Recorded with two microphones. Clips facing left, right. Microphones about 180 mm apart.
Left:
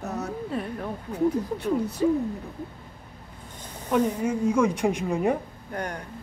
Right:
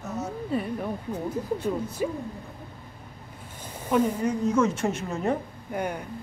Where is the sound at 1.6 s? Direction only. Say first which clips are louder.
Left 3 dB; 70° left (ahead or behind).